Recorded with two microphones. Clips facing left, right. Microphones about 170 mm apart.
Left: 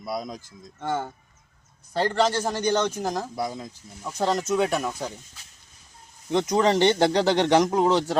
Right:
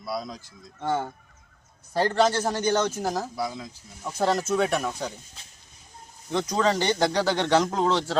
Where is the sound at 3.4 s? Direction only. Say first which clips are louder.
Left 1 dB; 45° left (ahead or behind).